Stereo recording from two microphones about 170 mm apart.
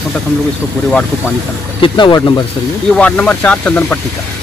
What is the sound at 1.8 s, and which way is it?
Speech, 25° left (ahead or behind).